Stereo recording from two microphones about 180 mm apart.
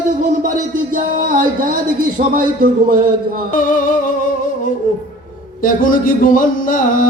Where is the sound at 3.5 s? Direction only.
45° left (ahead or behind).